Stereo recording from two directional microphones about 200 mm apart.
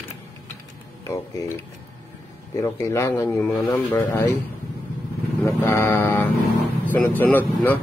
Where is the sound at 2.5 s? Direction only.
15° left (ahead or behind).